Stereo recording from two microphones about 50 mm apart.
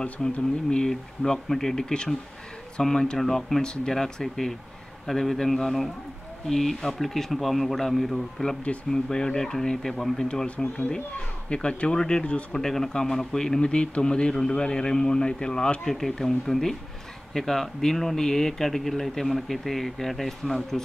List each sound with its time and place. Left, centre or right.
0.0 s speech: centre
10.2 s speech: centre
12.5 s speech: centre